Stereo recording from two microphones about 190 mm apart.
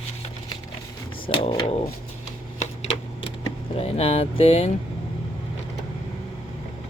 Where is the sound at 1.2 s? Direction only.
25° left (ahead or behind).